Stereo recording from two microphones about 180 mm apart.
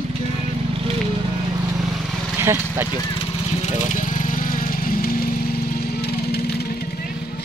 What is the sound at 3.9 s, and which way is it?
Vehicle, 45° left (ahead or behind).